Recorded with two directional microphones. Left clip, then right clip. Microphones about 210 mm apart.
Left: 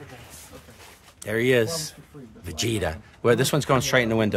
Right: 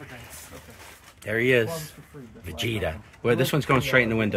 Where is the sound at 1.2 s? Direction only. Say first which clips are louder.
Left 1 dB; 20° left (ahead or behind).